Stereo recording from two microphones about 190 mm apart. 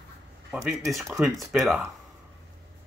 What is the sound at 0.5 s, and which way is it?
Speech, 5° right (ahead or behind).